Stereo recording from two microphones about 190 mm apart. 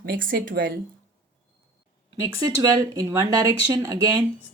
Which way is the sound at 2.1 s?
20° right (ahead or behind).